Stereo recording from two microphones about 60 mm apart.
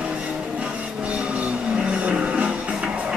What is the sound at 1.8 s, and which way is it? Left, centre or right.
Music, centre.